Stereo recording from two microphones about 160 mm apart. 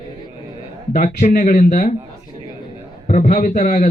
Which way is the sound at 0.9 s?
60° left (ahead or behind).